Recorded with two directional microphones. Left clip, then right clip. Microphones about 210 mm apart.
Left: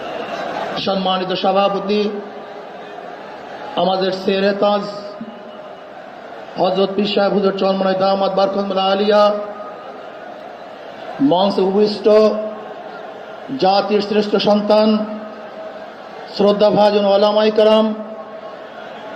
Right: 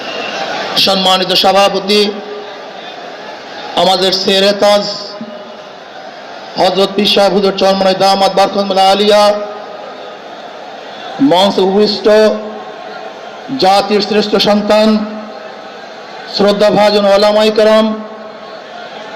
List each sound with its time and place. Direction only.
0.7 s a man's voice: 20° right (ahead or behind)
3.8 s a man's voice: 25° right (ahead or behind)
6.6 s a man's voice: 25° right (ahead or behind)
11.3 s a man's voice: 30° right (ahead or behind)
13.6 s a man's voice: 30° right (ahead or behind)
16.3 s a man's voice: 35° right (ahead or behind)